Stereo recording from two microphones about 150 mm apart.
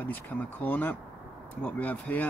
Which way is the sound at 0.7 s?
10° left (ahead or behind).